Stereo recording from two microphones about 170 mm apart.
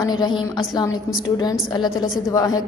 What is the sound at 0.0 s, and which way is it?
A woman's voice, 25° left (ahead or behind).